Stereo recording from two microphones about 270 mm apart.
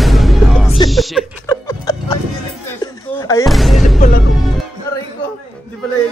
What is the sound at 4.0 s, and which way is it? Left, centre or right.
Speech, left.